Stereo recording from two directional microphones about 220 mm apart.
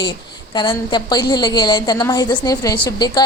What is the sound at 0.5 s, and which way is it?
A woman's voice, 20° left (ahead or behind).